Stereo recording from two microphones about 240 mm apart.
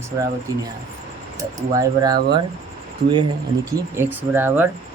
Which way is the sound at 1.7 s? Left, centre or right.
Centre.